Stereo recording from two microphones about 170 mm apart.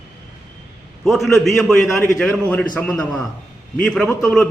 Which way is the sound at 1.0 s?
Centre (ahead or behind).